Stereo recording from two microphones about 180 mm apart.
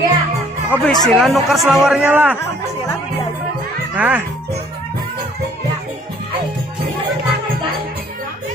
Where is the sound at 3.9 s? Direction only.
5° right (ahead or behind).